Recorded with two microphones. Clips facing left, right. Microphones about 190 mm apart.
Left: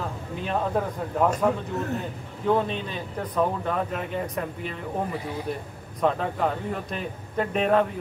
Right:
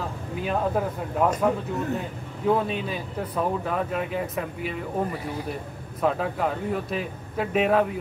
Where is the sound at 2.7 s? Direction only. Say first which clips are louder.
Right 2 dB; 5° right (ahead or behind).